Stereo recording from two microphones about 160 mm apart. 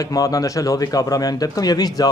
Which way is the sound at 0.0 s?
20° left (ahead or behind).